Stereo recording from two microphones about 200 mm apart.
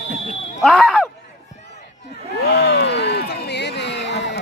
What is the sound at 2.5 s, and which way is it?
Crowd, 55° left (ahead or behind).